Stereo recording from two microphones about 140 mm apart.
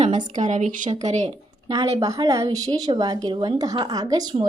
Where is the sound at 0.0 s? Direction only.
60° right (ahead or behind).